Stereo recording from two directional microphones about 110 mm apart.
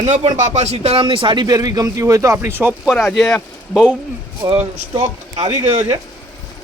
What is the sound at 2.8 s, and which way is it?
Speech, centre (ahead or behind).